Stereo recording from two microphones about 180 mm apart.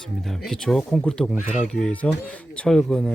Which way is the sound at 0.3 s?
Centre (ahead or behind).